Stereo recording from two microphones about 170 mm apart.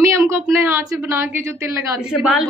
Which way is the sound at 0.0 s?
20° right (ahead or behind).